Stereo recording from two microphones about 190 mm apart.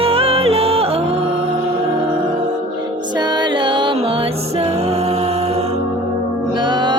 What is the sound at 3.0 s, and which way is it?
Music, 20° right (ahead or behind).